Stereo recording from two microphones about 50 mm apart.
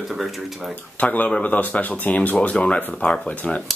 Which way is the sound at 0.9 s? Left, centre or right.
Left.